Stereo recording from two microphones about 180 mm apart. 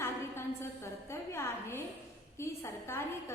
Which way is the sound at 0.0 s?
15° left (ahead or behind).